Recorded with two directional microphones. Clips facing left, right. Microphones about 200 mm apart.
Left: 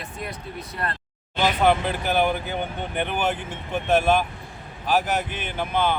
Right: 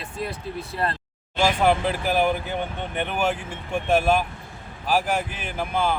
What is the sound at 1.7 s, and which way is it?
A man's voice, centre (ahead or behind).